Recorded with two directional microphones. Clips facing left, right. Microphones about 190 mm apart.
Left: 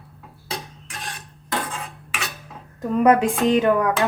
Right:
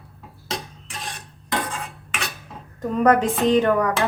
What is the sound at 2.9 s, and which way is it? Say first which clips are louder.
Speech: left 1 dB; 10° left (ahead or behind).